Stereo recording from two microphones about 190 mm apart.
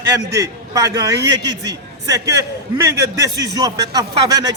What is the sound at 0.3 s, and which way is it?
A man's voice, 15° right (ahead or behind).